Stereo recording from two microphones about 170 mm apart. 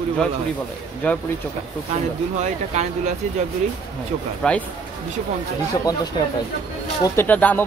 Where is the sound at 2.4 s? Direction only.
40° right (ahead or behind).